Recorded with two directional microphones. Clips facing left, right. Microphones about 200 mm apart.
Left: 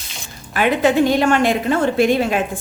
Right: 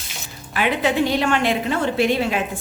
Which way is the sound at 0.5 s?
45° left (ahead or behind).